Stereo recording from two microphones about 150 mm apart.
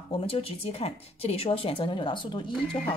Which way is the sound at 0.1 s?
40° left (ahead or behind).